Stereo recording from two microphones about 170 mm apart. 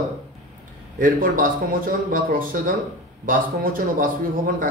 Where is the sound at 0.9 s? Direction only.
55° right (ahead or behind).